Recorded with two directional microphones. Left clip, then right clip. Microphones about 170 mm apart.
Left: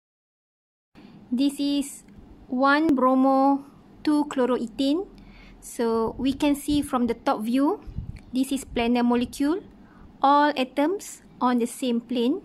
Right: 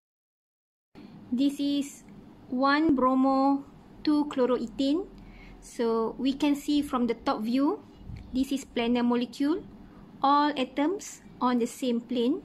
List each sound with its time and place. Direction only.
1.3 s speech: 30° left (ahead or behind)